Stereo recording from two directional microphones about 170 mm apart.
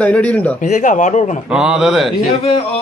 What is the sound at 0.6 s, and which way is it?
Speech, 45° left (ahead or behind).